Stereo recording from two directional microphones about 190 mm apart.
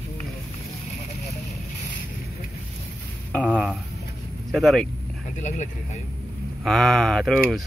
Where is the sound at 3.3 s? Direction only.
5° left (ahead or behind).